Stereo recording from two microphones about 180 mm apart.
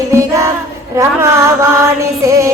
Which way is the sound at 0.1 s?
15° right (ahead or behind).